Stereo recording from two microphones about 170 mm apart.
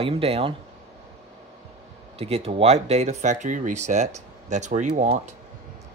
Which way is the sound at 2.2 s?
35° right (ahead or behind).